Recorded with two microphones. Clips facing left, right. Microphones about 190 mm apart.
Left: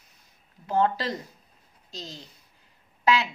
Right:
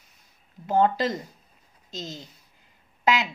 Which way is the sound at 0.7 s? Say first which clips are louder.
Right 3 dB; 20° right (ahead or behind).